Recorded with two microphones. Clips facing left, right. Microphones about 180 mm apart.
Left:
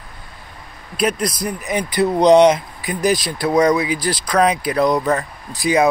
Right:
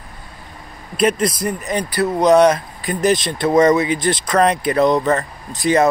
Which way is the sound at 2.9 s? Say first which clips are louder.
Right 2 dB; centre (ahead or behind).